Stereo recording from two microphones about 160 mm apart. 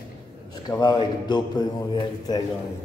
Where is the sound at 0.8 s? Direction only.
25° left (ahead or behind).